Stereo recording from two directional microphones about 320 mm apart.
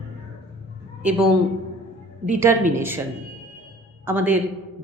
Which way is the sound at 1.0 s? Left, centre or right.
Centre.